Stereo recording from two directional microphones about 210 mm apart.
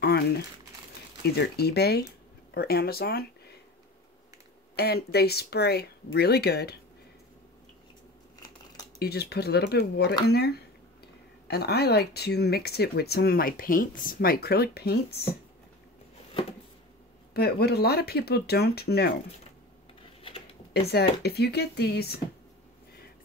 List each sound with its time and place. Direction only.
0.0 s speech: 50° left (ahead or behind)
4.7 s speech: 50° left (ahead or behind)
9.0 s speech: 50° left (ahead or behind)
17.3 s speech: 50° left (ahead or behind)
20.2 s a sound: 25° left (ahead or behind)
20.7 s speech: 50° left (ahead or behind)